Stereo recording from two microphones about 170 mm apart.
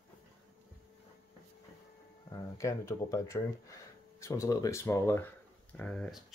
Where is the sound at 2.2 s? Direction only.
20° left (ahead or behind).